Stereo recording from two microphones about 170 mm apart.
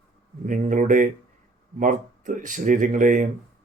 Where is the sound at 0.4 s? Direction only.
50° right (ahead or behind).